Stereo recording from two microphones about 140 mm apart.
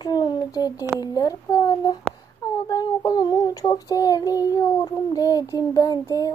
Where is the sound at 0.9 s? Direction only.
25° left (ahead or behind).